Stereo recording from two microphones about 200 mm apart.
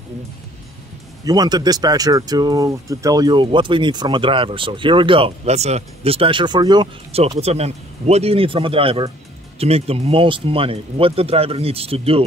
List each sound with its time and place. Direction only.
1.2 s speech: 20° right (ahead or behind)